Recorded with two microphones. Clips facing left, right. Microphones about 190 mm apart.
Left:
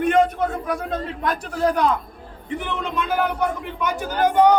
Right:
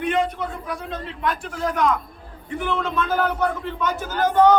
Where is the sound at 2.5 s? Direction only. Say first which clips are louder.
Right 2 dB; 20° left (ahead or behind).